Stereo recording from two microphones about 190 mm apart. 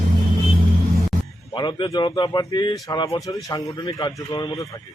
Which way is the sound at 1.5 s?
25° left (ahead or behind).